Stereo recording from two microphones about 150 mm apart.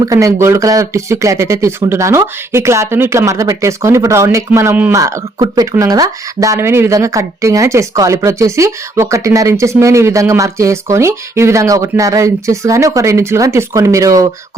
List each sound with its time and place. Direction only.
0.0 s speech: 20° right (ahead or behind)